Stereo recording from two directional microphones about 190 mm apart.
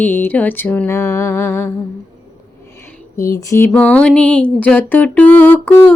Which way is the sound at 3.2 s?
15° left (ahead or behind).